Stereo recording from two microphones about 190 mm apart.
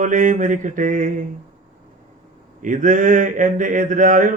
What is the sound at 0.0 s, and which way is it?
Mantra, 45° right (ahead or behind).